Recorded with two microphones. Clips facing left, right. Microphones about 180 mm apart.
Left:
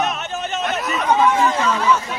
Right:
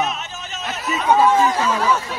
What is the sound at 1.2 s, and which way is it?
Speech, 30° right (ahead or behind).